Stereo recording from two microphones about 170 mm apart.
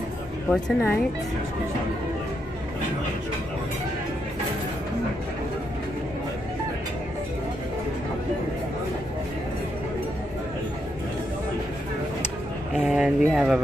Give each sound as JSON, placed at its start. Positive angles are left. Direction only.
{"t": 0.5, "sound": "speech", "side_deg": 10}
{"t": 12.7, "sound": "speech", "side_deg": -5}